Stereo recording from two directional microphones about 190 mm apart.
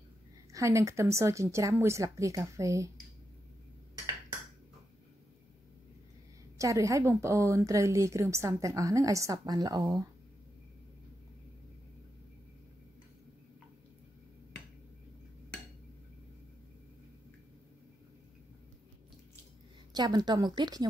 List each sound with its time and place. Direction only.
0.5 s a woman's voice: 15° right (ahead or behind)
6.6 s a woman's voice: 15° right (ahead or behind)
19.9 s a woman's voice: 20° right (ahead or behind)